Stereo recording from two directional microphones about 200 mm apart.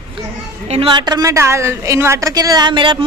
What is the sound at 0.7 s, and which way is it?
A woman's voice, 25° right (ahead or behind).